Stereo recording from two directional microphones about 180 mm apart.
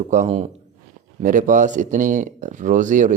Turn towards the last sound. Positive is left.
turn(degrees=-45)  # may be behind; listen again after turning